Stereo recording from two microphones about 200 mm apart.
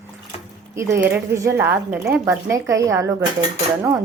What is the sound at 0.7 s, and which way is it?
A woman's voice, 15° right (ahead or behind).